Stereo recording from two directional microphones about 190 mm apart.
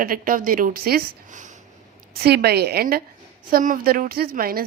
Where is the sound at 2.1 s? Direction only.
55° right (ahead or behind).